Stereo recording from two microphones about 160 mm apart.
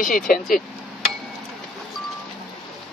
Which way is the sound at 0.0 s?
60° left (ahead or behind).